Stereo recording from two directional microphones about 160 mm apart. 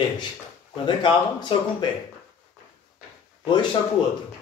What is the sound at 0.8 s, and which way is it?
Speech, 30° left (ahead or behind).